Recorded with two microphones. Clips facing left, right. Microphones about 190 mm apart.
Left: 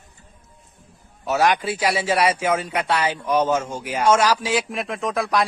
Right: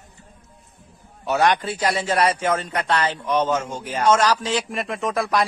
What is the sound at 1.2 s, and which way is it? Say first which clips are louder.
A man's voice: even; 5° left (ahead or behind).